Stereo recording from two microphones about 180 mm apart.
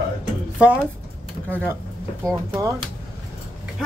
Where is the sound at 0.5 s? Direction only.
5° right (ahead or behind).